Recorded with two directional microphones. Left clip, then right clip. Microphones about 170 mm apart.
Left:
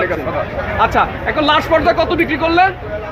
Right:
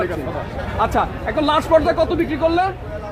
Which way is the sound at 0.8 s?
45° right (ahead or behind).